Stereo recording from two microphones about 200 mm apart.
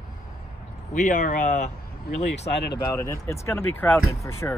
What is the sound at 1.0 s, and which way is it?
Speech, 40° left (ahead or behind).